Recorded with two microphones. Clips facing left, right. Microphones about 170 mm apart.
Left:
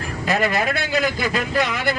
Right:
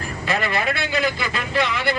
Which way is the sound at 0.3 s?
45° left (ahead or behind).